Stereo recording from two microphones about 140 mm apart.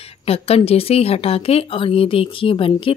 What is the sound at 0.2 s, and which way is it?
Speech, 45° left (ahead or behind).